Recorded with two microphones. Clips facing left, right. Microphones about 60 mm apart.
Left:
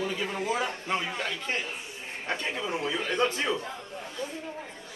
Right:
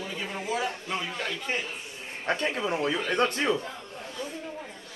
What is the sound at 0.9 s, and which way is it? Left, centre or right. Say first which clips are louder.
Speech: left 2 dB; centre.